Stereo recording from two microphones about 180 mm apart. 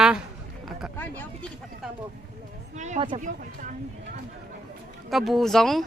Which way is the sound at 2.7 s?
40° right (ahead or behind).